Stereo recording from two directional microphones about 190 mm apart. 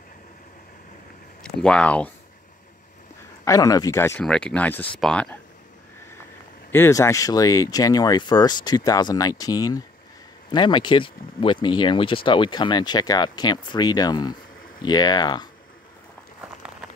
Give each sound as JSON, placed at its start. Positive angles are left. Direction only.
{"t": 1.4, "sound": "speech", "side_deg": 5}
{"t": 3.4, "sound": "speech", "side_deg": 20}
{"t": 4.2, "sound": "speech", "side_deg": 5}
{"t": 6.7, "sound": "speech", "side_deg": 15}